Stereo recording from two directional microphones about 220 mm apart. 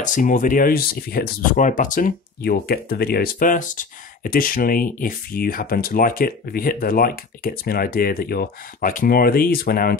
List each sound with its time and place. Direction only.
0.0 s speech: 35° left (ahead or behind)